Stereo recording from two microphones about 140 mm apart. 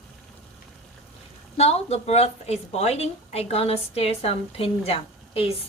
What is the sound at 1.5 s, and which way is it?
Speech, 50° left (ahead or behind).